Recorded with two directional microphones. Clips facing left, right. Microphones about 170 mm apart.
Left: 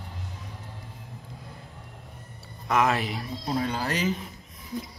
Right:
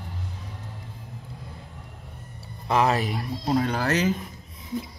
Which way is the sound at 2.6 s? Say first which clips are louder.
Right 2 dB; 30° right (ahead or behind).